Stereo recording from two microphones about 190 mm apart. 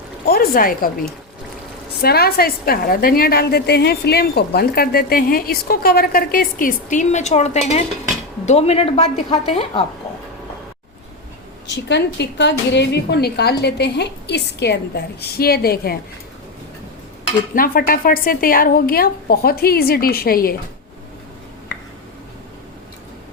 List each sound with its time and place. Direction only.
0.3 s a woman's voice: 50° left (ahead or behind); by 9.8 s 30° left (ahead or behind)
11.7 s a woman's voice: 65° left (ahead or behind)
17.5 s a woman's voice: 50° left (ahead or behind)